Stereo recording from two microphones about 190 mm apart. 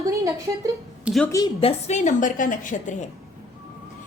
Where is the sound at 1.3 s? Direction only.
25° left (ahead or behind); by 3.0 s 40° left (ahead or behind).